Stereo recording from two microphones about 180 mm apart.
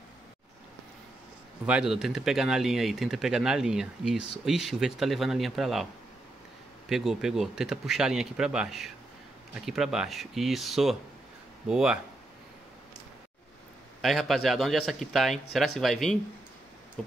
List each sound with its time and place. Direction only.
1.7 s speech: 5° right (ahead or behind)
6.9 s speech: 5° right (ahead or behind)
14.0 s speech: centre (ahead or behind)